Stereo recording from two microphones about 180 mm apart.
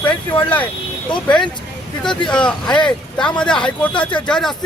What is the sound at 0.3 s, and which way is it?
Speech, 25° left (ahead or behind).